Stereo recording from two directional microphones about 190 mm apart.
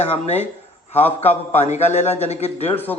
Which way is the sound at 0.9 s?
10° left (ahead or behind).